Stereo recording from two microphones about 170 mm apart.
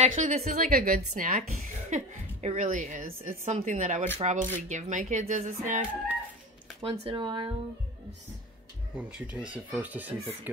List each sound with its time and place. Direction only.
0.0 s a woman's voice: 45° right (ahead or behind)
0.7 s a woman's voice: 55° right (ahead or behind)
6.8 s speech: 35° right (ahead or behind)
8.9 s speech: 5° right (ahead or behind)